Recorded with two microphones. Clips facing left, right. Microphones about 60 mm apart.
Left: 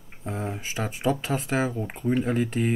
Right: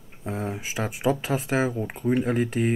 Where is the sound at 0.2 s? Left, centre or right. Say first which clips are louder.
Right 1 dB; centre.